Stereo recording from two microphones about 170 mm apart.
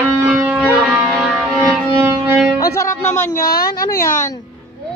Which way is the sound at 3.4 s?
60° left (ahead or behind).